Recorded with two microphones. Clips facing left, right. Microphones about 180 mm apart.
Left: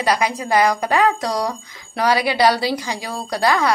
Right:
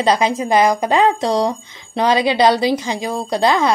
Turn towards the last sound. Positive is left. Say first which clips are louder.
# right 3 dB
turn(degrees=-20)  # may be behind; listen again after turning